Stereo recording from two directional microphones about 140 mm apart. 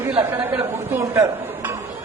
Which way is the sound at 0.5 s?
15° right (ahead or behind).